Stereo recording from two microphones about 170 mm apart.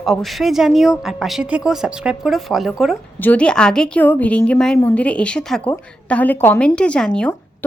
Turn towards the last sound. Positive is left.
turn(degrees=5)  # may be behind; listen again after turning